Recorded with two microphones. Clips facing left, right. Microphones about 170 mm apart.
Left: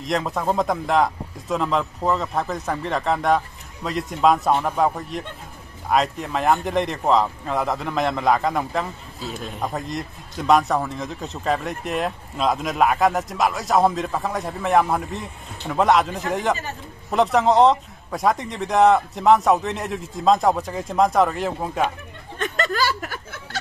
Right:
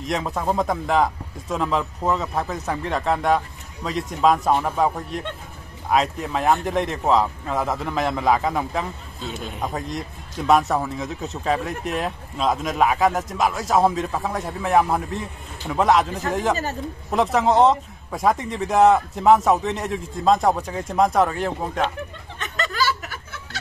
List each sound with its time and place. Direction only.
0.0 s a man's voice: centre (ahead or behind)
22.4 s chuckle: 45° left (ahead or behind)